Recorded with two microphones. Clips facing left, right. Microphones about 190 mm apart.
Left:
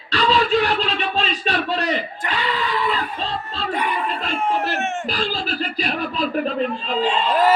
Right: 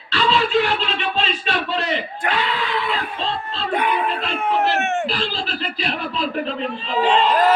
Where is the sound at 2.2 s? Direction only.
60° right (ahead or behind).